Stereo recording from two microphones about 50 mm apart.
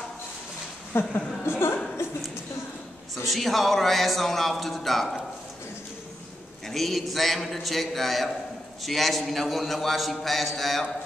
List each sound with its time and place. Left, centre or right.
0.9 s speech: left
3.3 s a man's voice: centre
6.7 s a man's voice: centre